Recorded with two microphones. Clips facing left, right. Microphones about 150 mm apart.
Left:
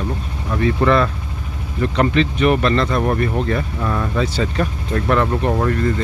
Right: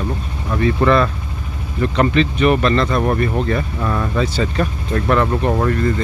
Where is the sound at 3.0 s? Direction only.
45° right (ahead or behind).